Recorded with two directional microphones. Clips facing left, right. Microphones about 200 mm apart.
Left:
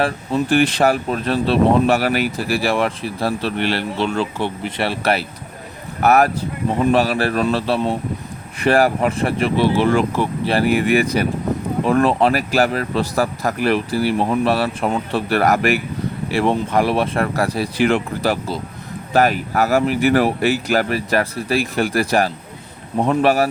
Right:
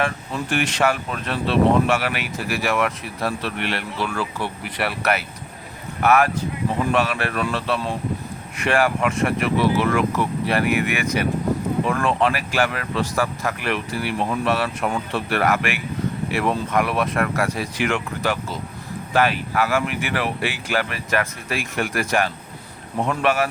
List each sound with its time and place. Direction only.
0.0 s speech: 30° left (ahead or behind)